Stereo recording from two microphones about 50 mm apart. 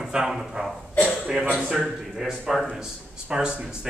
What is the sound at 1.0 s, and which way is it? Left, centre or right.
Speech, centre.